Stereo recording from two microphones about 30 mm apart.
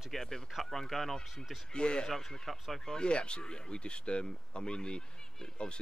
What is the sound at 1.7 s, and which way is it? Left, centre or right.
Speech, left.